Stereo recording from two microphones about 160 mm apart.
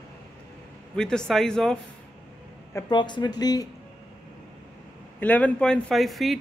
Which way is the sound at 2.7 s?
25° left (ahead or behind).